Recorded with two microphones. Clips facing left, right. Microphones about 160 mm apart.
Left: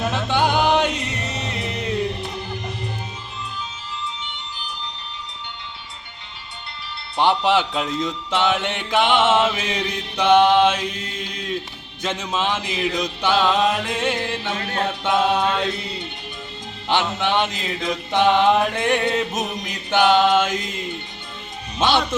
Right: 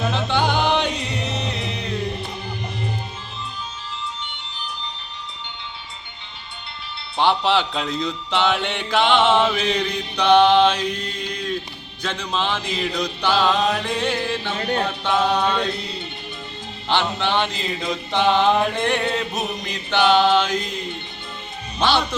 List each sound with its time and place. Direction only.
0.0 s music: 10° left (ahead or behind)
7.2 s speech: 10° left (ahead or behind)
7.6 s mantra: 5° left (ahead or behind)
16.9 s mantra: 10° left (ahead or behind)
17.6 s mantra: centre (ahead or behind)
21.8 s speech: 20° left (ahead or behind)